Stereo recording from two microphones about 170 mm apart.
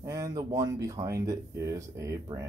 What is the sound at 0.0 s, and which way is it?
Speech, 20° right (ahead or behind).